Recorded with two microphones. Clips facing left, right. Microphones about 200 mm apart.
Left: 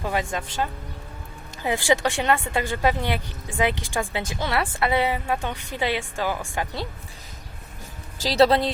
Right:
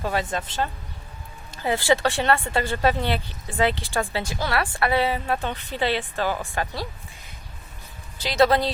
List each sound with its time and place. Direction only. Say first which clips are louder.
0.0 s a woman's voice: right 1 dB; 15° left (ahead or behind)
8.2 s speech: left 1 dB; 35° left (ahead or behind)